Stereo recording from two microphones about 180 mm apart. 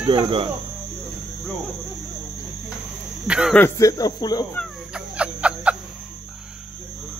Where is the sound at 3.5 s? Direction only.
15° left (ahead or behind).